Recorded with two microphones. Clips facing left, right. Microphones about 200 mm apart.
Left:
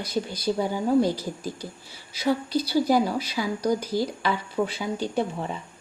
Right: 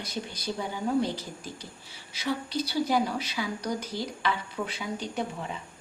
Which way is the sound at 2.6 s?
35° left (ahead or behind).